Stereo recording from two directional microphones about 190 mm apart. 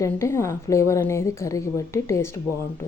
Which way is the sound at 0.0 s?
15° left (ahead or behind).